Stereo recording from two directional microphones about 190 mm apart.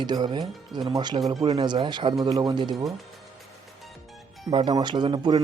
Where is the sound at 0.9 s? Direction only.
25° right (ahead or behind).